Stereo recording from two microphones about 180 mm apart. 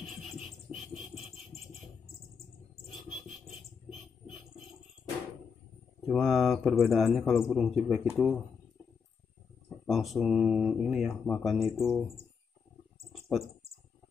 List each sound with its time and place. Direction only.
0.0 s music: centre (ahead or behind)
1.5 s a sound: 20° left (ahead or behind)
6.0 s speech: centre (ahead or behind)
9.7 s speech: centre (ahead or behind)